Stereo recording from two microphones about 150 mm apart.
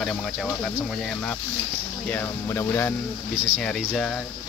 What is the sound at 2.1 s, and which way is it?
Speech, 15° left (ahead or behind).